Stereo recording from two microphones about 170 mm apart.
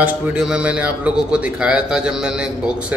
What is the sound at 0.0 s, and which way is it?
Speech, 10° right (ahead or behind).